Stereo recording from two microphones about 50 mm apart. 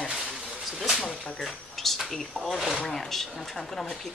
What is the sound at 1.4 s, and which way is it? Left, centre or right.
Speech, centre.